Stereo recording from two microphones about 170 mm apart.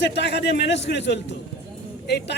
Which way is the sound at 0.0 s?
90° left.